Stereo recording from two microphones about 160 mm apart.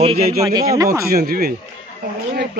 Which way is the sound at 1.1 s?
70° right (ahead or behind).